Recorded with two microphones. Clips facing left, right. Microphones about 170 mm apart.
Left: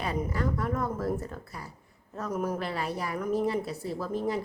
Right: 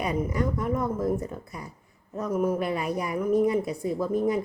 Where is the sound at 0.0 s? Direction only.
15° right (ahead or behind).